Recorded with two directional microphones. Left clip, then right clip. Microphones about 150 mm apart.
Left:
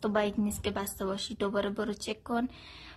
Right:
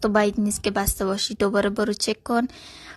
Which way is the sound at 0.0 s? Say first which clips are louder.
Right 9 dB; 40° right (ahead or behind).